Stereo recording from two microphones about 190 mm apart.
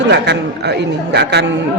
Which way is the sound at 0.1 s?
65° right (ahead or behind).